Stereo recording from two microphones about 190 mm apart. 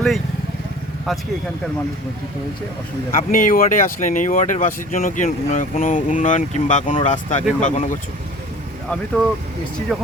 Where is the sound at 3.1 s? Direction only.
45° left (ahead or behind).